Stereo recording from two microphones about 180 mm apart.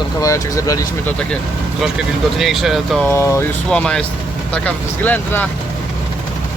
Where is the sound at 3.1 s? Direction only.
15° left (ahead or behind).